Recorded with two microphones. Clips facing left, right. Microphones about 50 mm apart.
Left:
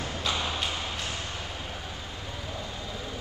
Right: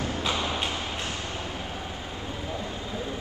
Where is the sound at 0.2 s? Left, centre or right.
Right.